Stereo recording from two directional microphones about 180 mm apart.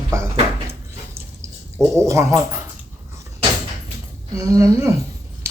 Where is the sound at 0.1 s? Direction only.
15° right (ahead or behind).